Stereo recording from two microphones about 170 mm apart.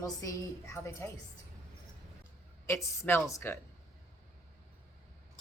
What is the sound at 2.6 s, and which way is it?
Speech, 15° left (ahead or behind).